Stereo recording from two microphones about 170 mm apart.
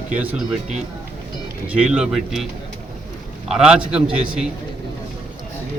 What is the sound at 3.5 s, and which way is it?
Speech, 5° right (ahead or behind).